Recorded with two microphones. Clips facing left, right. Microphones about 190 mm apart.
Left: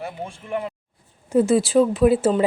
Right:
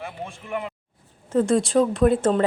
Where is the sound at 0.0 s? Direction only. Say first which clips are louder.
Left 3 dB; 35° left (ahead or behind).